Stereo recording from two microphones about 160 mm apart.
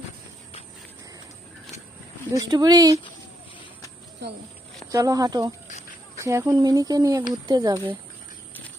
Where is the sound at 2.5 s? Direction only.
25° right (ahead or behind).